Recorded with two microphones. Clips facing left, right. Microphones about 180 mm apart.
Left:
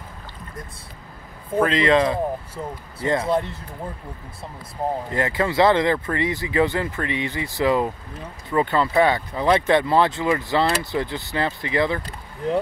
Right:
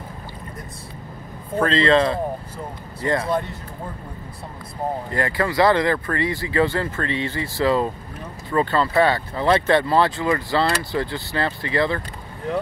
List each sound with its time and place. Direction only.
1.6 s speech: 15° left (ahead or behind)
5.1 s speech: 20° left (ahead or behind)